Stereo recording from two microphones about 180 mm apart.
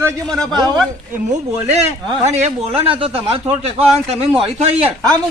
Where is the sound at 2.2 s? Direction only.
40° right (ahead or behind).